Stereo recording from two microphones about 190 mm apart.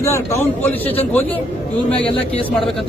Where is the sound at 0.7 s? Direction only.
10° left (ahead or behind).